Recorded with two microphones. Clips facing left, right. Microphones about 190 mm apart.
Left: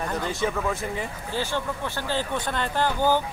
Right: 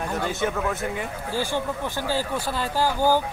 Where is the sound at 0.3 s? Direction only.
Centre (ahead or behind).